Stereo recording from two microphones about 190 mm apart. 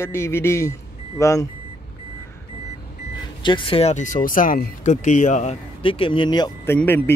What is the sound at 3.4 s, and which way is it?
Speech, 25° left (ahead or behind).